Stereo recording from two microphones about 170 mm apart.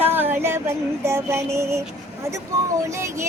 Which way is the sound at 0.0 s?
10° right (ahead or behind).